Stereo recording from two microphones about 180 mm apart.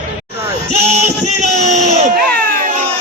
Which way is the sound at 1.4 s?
40° right (ahead or behind).